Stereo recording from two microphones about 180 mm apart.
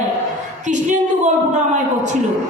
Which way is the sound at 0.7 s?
45° right (ahead or behind).